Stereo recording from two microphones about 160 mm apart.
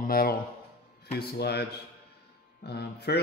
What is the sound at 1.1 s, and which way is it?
Speech, 90° left.